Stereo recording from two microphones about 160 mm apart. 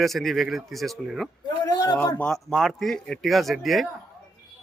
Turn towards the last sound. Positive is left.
turn(degrees=0)  # may be behind; listen again after turning